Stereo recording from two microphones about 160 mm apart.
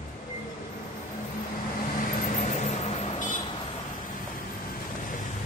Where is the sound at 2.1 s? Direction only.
50° left (ahead or behind).